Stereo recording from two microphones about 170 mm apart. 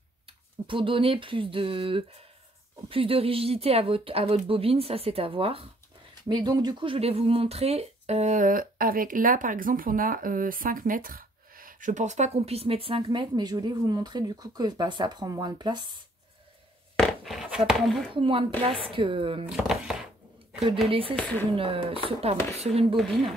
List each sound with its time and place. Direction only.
0.7 s speech: 30° right (ahead or behind)
16.9 s a sound: centre (ahead or behind)
18.1 s speech: 30° right (ahead or behind)
19.4 s speech: 5° right (ahead or behind)
20.9 s speech: 35° right (ahead or behind)